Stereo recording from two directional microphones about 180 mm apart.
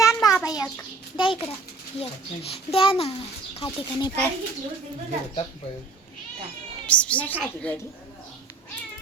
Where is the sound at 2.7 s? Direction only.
30° left (ahead or behind).